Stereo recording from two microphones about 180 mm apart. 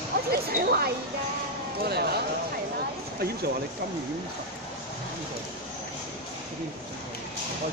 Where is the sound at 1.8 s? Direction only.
60° right (ahead or behind).